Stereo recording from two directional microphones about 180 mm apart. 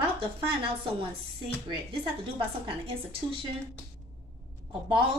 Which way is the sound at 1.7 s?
25° right (ahead or behind).